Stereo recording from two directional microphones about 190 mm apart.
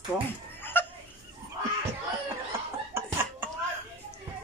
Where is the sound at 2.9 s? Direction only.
10° right (ahead or behind).